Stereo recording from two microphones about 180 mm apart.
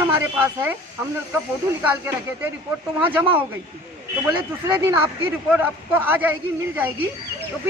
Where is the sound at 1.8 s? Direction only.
10° right (ahead or behind).